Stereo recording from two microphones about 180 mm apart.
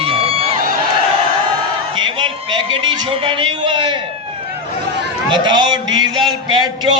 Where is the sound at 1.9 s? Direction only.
25° right (ahead or behind).